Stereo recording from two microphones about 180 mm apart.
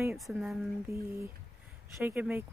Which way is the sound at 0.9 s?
15° right (ahead or behind).